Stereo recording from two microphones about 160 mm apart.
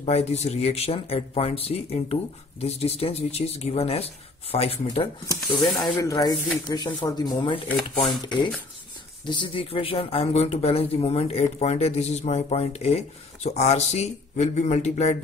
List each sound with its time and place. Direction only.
0.0 s speech: 40° left (ahead or behind)
5.6 s speech: centre (ahead or behind)
5.9 s speech: 20° left (ahead or behind); by 15.1 s 45° left (ahead or behind)